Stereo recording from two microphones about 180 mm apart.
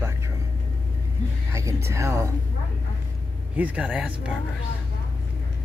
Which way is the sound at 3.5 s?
10° right (ahead or behind).